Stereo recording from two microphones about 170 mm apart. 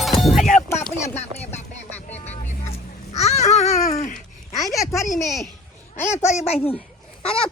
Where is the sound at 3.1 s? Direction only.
40° left (ahead or behind).